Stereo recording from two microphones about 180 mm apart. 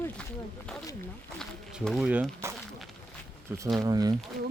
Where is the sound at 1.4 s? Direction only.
Centre (ahead or behind).